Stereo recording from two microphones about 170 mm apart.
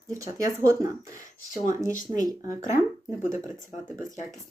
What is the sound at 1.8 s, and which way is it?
Speech, 50° left (ahead or behind).